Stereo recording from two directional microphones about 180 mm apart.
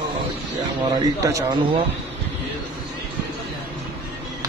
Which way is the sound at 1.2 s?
15° right (ahead or behind).